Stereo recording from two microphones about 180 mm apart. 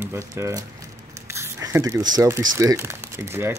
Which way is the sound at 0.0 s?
15° right (ahead or behind).